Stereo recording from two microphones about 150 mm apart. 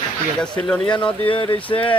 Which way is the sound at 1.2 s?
35° left (ahead or behind).